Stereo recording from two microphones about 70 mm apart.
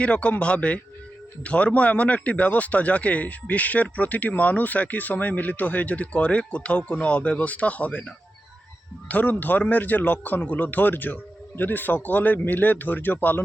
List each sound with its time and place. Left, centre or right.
0.0 s speech: centre